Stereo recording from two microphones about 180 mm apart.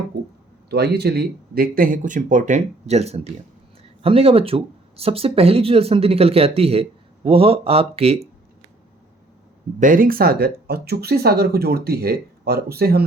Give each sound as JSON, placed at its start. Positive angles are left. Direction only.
{"t": 0.7, "sound": "speech", "side_deg": -65}
{"t": 9.8, "sound": "speech", "side_deg": -50}